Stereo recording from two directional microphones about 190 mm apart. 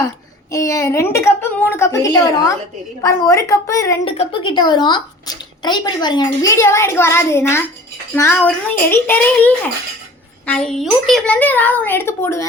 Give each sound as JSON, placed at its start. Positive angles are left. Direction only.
{"t": 0.5, "sound": "a woman's voice", "side_deg": 15}
{"t": 4.0, "sound": "a woman's voice", "side_deg": 25}